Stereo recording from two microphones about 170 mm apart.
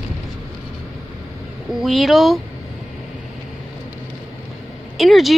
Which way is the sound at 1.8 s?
Centre (ahead or behind).